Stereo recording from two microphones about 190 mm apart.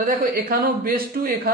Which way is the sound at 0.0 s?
50° right (ahead or behind).